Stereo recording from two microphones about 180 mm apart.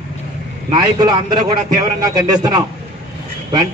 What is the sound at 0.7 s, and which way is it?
A man's voice, 25° right (ahead or behind).